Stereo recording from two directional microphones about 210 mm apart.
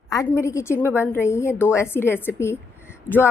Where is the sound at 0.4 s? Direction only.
15° left (ahead or behind).